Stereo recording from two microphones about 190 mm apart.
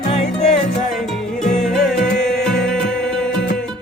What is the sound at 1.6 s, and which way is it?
Music, centre (ahead or behind).